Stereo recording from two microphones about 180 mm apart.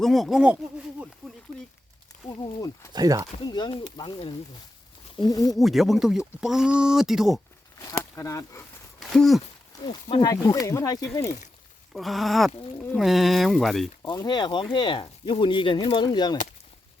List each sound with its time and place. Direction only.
0.0 s speech: centre (ahead or behind)
2.4 s speech: 20° left (ahead or behind)
2.9 s speech: 20° right (ahead or behind)
3.3 s speech: 25° left (ahead or behind)
5.5 s speech: centre (ahead or behind)
7.8 s speech: 15° left (ahead or behind)
9.0 s a sound: centre (ahead or behind)
9.8 s speech: 25° left (ahead or behind)
11.9 s speech: centre (ahead or behind)
14.0 s speech: 20° left (ahead or behind)